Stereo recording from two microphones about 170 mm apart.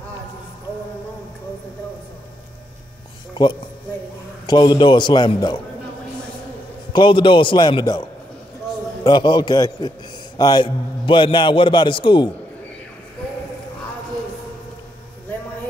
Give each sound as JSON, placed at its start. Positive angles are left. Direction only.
{"t": 3.4, "sound": "a man's voice", "side_deg": 25}
{"t": 6.9, "sound": "a man's voice", "side_deg": 30}
{"t": 9.0, "sound": "a man's voice", "side_deg": 25}